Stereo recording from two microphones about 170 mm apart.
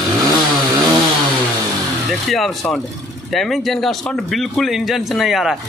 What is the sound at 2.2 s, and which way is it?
Speech, centre (ahead or behind).